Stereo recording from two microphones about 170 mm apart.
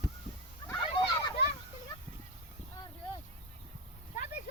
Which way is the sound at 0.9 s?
25° left (ahead or behind).